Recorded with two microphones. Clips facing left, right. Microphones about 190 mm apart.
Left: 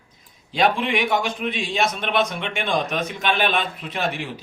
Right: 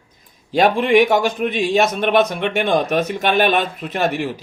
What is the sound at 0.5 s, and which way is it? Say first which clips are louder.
A man's voice: right 7 dB; 45° right (ahead or behind).